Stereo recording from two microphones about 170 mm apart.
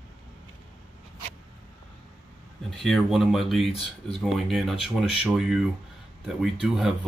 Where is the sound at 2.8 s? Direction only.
Centre (ahead or behind).